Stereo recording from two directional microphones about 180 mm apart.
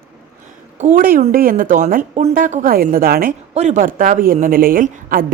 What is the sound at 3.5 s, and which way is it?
A woman's voice, 40° right (ahead or behind).